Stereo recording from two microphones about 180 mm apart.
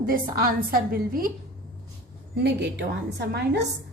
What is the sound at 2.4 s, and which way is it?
A woman's voice, 70° right (ahead or behind).